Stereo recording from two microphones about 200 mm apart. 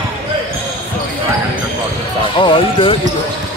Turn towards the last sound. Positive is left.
turn(degrees=25)  # may be behind; listen again after turning